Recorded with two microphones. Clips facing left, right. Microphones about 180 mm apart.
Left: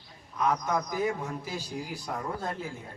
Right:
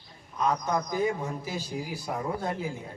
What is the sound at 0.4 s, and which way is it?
Speech, centre (ahead or behind).